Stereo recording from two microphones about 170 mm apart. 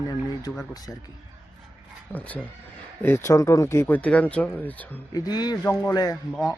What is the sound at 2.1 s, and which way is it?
Speech, 10° left (ahead or behind).